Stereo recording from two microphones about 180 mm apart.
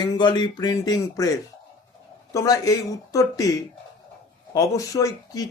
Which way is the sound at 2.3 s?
20° left (ahead or behind).